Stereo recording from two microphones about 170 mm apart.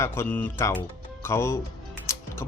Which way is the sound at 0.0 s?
15° left (ahead or behind).